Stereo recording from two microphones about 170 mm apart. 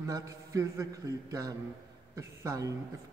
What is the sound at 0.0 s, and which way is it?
A man's voice, 20° right (ahead or behind).